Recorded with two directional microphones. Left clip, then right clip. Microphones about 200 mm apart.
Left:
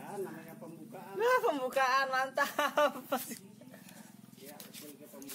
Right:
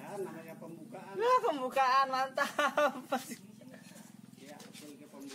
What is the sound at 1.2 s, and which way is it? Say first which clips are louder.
Speech: even; 25° left (ahead or behind).